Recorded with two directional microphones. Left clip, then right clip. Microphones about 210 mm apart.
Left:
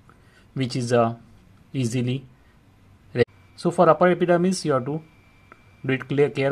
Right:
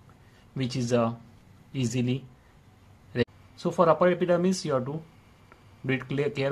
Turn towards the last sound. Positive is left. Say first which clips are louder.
# left 7 dB
turn(degrees=20)  # may be behind; listen again after turning